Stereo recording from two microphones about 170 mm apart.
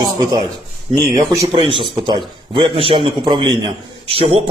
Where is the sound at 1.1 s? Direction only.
25° right (ahead or behind).